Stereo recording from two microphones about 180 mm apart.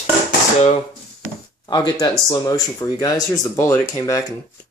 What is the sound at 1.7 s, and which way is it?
Speech, 25° left (ahead or behind).